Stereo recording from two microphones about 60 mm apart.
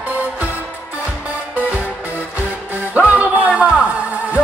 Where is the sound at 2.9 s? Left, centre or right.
Right.